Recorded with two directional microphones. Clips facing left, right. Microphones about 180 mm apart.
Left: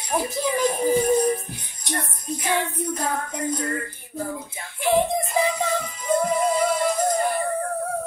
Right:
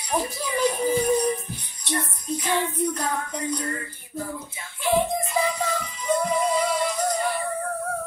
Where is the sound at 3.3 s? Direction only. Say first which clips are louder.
Left 2 dB; 50° left (ahead or behind).